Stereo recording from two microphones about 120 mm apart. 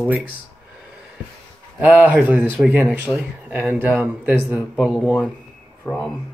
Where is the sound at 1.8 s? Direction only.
10° right (ahead or behind).